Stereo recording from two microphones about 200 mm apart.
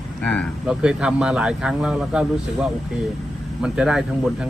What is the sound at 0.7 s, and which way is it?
Speech, 5° right (ahead or behind).